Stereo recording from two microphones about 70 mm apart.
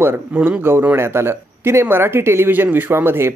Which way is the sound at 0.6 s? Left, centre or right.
Right.